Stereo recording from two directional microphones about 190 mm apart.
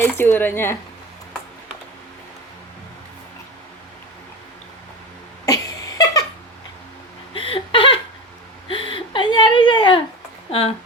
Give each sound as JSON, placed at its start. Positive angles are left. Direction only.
{"t": 0.0, "sound": "speech", "side_deg": 10}
{"t": 5.5, "sound": "a sound", "side_deg": 20}
{"t": 7.3, "sound": "hiccup", "side_deg": 30}
{"t": 8.6, "sound": "whimper", "side_deg": 25}